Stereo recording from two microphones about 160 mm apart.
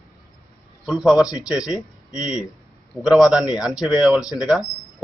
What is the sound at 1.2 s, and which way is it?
Speech, 25° left (ahead or behind).